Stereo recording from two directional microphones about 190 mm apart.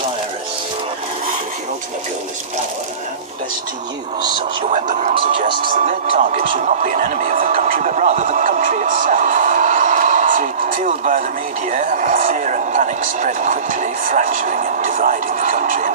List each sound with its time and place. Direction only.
4.6 s speech: 40° right (ahead or behind)